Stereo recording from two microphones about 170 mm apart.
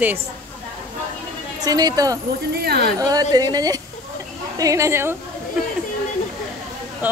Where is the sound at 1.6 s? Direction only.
20° right (ahead or behind).